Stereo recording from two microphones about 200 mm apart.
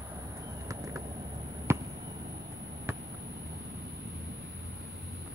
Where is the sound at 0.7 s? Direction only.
15° right (ahead or behind).